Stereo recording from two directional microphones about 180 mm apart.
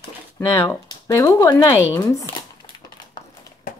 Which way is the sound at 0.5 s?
15° left (ahead or behind).